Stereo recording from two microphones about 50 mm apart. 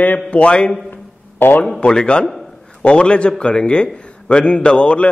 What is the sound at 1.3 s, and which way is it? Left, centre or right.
Speech, left.